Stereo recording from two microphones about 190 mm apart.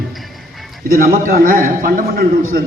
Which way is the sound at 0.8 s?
50° right (ahead or behind).